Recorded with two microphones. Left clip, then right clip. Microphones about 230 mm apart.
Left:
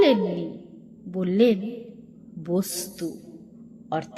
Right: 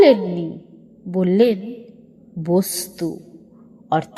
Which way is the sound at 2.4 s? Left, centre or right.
Right.